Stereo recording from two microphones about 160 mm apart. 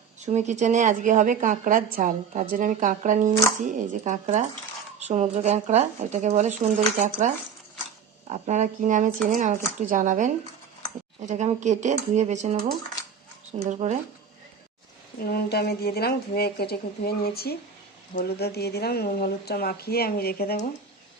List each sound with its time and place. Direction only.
0.3 s a woman's voice: 45° right (ahead or behind)
13.6 s a woman's voice: 45° right (ahead or behind)
15.2 s speech: 75° left (ahead or behind)